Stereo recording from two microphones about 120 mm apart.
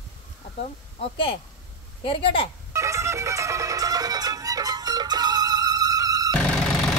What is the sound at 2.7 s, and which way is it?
Music, 25° right (ahead or behind).